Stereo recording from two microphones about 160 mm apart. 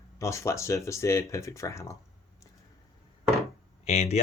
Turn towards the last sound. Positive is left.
turn(degrees=40)  # may be behind; listen again after turning